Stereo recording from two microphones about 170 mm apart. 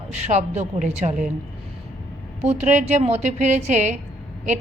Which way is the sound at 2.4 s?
40° right (ahead or behind).